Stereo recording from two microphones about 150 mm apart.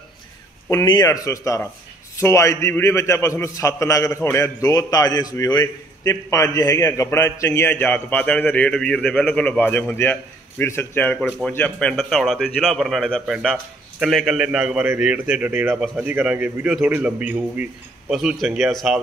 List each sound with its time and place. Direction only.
0.7 s a man's voice: 25° left (ahead or behind); by 18.9 s centre (ahead or behind)